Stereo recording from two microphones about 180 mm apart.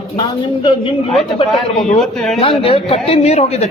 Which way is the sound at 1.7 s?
40° left (ahead or behind).